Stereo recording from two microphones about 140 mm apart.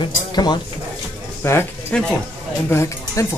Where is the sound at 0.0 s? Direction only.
30° left (ahead or behind).